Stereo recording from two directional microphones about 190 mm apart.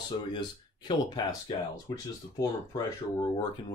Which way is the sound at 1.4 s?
20° left (ahead or behind).